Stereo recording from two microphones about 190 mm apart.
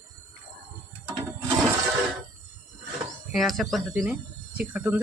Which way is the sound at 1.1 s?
20° right (ahead or behind).